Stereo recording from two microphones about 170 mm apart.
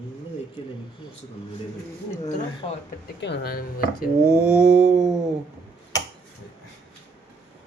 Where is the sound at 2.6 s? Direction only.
35° left (ahead or behind).